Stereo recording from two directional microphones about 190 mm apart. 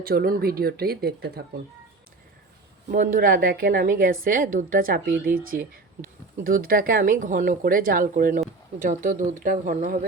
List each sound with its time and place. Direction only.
0.0 s a woman's voice: 50° right (ahead or behind)
2.9 s a woman's voice: 45° right (ahead or behind)